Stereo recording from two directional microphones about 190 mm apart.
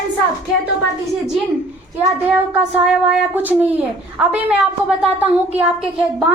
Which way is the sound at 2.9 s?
5° right (ahead or behind).